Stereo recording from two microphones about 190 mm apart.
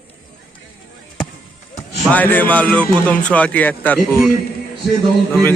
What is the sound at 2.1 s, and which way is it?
Speech, 10° left (ahead or behind).